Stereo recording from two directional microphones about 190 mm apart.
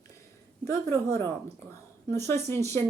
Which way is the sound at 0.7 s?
15° left (ahead or behind).